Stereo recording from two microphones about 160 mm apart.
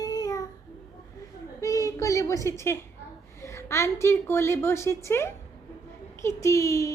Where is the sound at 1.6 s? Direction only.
20° left (ahead or behind).